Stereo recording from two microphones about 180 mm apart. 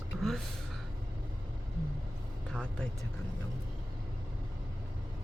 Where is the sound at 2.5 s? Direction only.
5° left (ahead or behind).